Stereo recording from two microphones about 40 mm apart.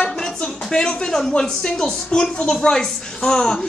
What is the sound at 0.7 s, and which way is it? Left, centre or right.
A man's voice, centre.